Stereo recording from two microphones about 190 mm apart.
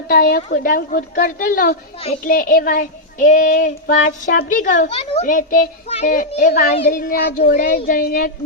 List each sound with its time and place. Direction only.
0.1 s child singing: 50° left (ahead or behind)